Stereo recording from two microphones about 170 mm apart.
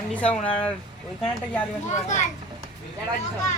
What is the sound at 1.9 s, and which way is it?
Speech, 45° left (ahead or behind).